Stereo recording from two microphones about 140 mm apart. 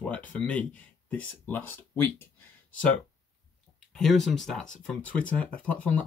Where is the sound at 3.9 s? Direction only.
Centre (ahead or behind).